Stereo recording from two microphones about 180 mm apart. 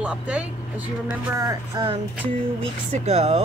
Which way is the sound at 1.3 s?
20° right (ahead or behind).